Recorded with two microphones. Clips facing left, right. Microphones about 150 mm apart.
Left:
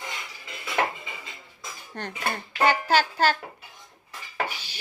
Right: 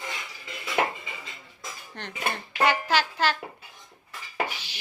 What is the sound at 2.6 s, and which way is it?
Speech, 35° left (ahead or behind).